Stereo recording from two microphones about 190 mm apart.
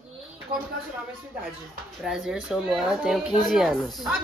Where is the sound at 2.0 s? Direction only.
5° right (ahead or behind).